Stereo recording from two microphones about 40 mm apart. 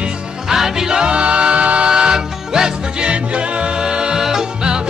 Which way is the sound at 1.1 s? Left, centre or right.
Right.